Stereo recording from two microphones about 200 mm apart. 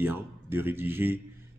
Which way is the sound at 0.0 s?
10° right (ahead or behind).